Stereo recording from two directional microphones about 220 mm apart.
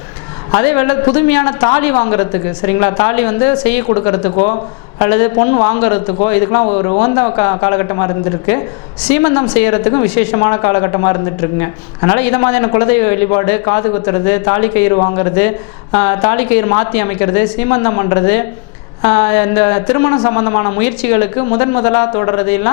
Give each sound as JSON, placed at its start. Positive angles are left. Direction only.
{"t": 0.5, "sound": "a man's voice", "side_deg": 20}